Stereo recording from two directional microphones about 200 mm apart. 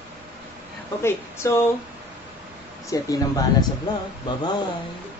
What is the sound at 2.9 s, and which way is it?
Speech, 15° left (ahead or behind).